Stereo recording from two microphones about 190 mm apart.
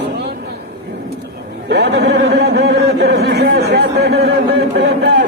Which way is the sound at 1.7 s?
60° right (ahead or behind).